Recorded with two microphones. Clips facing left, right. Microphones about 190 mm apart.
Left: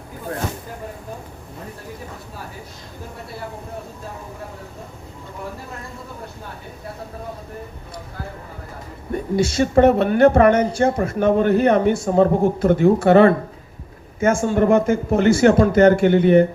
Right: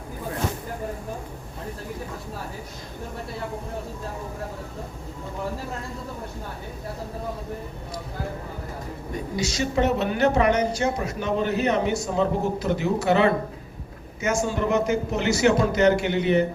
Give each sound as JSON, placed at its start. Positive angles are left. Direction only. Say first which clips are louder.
{"t": 9.3, "sound": "a man's voice", "louder": "left 9 dB", "side_deg": 55}